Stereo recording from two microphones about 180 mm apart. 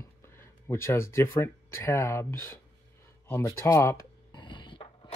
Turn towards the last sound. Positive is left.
turn(degrees=25)  # may be behind; listen again after turning